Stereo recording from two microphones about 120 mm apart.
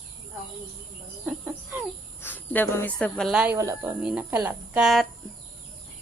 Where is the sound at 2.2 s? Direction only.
15° left (ahead or behind).